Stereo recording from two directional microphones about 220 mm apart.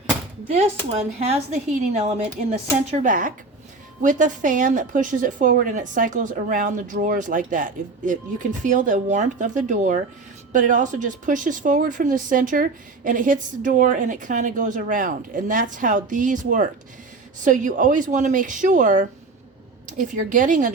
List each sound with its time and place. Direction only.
1.3 s a woman's voice: 30° right (ahead or behind)